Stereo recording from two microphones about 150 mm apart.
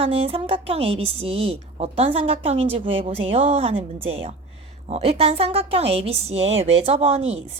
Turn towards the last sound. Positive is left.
turn(degrees=-45)  # may be behind; listen again after turning